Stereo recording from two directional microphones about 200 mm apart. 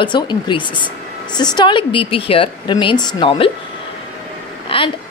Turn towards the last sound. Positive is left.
turn(degrees=25)  # may be behind; listen again after turning